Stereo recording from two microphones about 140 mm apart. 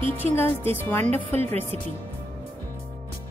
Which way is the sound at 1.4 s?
50° right (ahead or behind).